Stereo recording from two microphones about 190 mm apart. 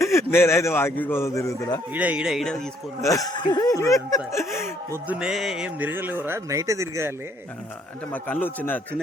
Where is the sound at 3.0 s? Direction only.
15° left (ahead or behind).